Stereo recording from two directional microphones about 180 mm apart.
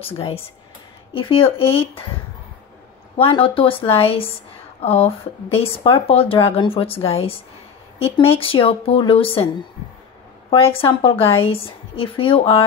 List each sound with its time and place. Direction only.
0.0 s speech: 30° left (ahead or behind)
3.2 s speech: 30° left (ahead or behind)
10.7 s speech: 30° left (ahead or behind)